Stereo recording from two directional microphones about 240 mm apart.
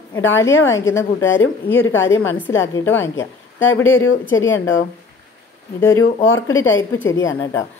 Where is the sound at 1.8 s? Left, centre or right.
Left.